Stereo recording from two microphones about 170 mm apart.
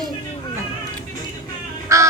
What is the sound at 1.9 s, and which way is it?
Crow, 15° right (ahead or behind).